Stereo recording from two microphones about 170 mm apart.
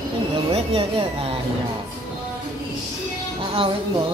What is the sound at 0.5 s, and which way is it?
Speech, 35° right (ahead or behind).